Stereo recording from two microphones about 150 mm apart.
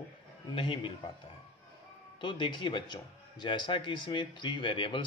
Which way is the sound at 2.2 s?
30° left (ahead or behind).